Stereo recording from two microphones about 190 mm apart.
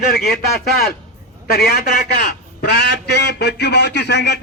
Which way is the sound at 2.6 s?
60° left (ahead or behind).